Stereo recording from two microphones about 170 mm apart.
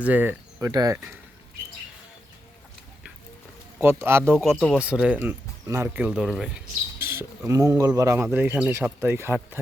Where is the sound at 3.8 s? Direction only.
15° right (ahead or behind).